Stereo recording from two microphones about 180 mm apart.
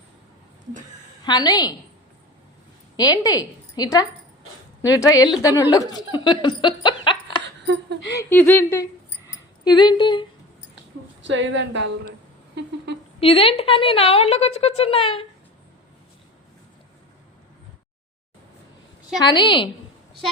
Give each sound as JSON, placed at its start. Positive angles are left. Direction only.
{"t": 1.2, "sound": "speech", "side_deg": 25}
{"t": 2.9, "sound": "a woman's voice", "side_deg": 20}
{"t": 7.4, "sound": "a sound", "side_deg": -75}
{"t": 8.2, "sound": "speech", "side_deg": 10}
{"t": 9.6, "sound": "speech", "side_deg": 25}
{"t": 11.2, "sound": "a woman's voice", "side_deg": -90}
{"t": 12.5, "sound": "a sound", "side_deg": -70}
{"t": 13.1, "sound": "a woman's voice", "side_deg": 30}
{"t": 19.2, "sound": "speech", "side_deg": 25}